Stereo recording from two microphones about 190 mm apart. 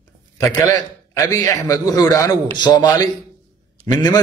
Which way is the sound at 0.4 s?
20° left (ahead or behind).